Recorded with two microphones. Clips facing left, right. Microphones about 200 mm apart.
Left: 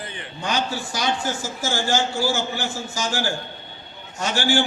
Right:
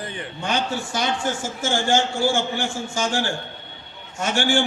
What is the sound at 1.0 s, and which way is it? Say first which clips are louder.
Speech: left 1 dB; 25° right (ahead or behind).